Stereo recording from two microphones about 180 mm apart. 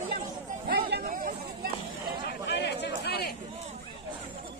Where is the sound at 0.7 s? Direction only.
55° right (ahead or behind).